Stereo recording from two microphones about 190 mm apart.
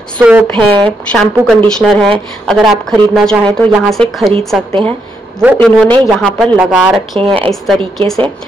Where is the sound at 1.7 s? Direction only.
5° left (ahead or behind).